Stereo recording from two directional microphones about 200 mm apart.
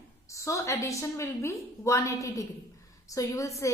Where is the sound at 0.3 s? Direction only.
15° left (ahead or behind).